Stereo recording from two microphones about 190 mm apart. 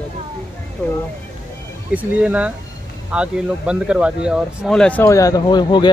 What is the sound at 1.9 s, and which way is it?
Speech, 5° right (ahead or behind).